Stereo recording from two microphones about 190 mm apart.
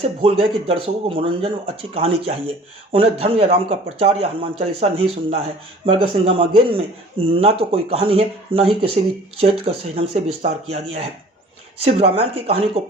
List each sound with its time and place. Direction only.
0.2 s speech: 30° right (ahead or behind)